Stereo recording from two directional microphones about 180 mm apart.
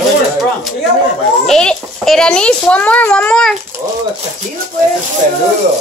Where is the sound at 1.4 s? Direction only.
5° left (ahead or behind).